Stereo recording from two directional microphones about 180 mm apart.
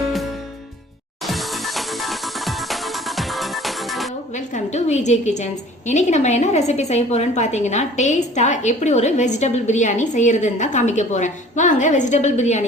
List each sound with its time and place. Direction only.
1.2 s music: centre (ahead or behind)
4.4 s a woman's voice: 40° left (ahead or behind)